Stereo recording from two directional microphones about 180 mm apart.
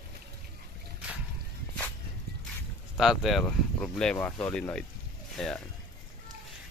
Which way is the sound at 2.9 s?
Centre (ahead or behind).